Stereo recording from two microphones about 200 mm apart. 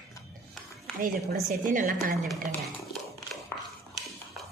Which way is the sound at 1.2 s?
45° right (ahead or behind).